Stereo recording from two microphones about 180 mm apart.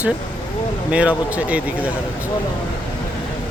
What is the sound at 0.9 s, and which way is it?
Speech, 5° right (ahead or behind).